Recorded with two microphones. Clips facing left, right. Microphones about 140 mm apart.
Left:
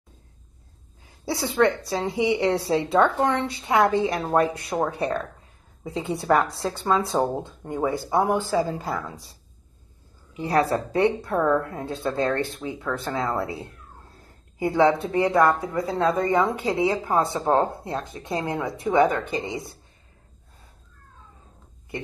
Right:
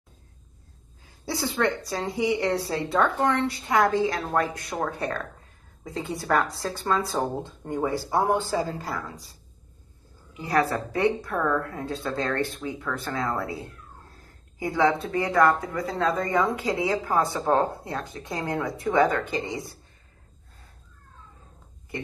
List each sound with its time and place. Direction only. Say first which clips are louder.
1.0 s a sound: left 2 dB; 25° left (ahead or behind)
1.9 s speech: left 2 dB; 25° left (ahead or behind)
6.0 s speech: left 4 dB; 25° left (ahead or behind)
10.3 s speech: left 2 dB; 25° left (ahead or behind)